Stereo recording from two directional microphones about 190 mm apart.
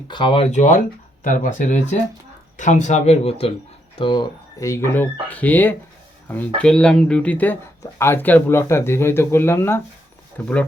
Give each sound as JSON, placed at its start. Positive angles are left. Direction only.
{"t": 0.1, "sound": "speech", "side_deg": 25}